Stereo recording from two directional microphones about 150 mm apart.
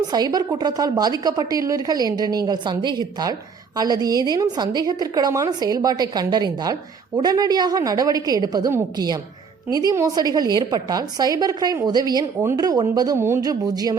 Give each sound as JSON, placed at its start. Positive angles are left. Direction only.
{"t": 0.1, "sound": "a woman's voice", "side_deg": -25}